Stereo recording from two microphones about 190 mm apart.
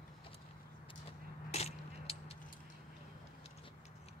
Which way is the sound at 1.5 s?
35° left (ahead or behind).